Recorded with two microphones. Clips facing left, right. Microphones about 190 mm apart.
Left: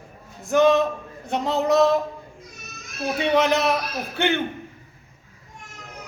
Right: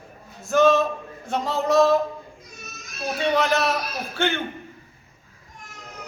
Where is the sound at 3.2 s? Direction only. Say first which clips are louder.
Left 2 dB; 15° left (ahead or behind).